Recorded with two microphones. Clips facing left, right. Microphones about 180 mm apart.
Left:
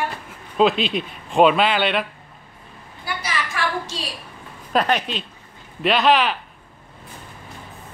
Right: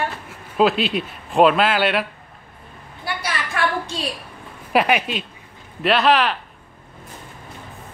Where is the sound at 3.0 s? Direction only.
60° right (ahead or behind).